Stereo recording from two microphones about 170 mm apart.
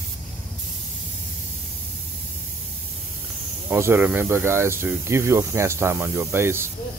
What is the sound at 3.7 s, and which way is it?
Speech, 15° right (ahead or behind).